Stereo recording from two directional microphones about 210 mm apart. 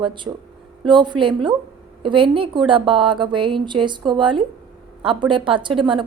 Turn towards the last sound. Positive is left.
turn(degrees=-25)  # may be behind; listen again after turning